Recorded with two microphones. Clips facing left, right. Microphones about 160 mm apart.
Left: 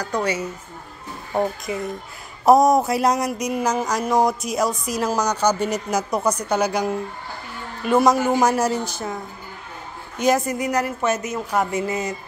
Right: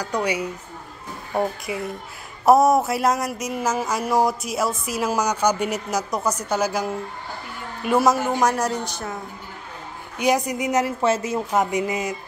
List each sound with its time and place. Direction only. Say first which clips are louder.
0.0 s a woman's voice: even; 15° right (ahead or behind)
10.1 s a woman's voice: left 1 dB; 15° right (ahead or behind)
11.6 s a woman's voice: even; 15° right (ahead or behind)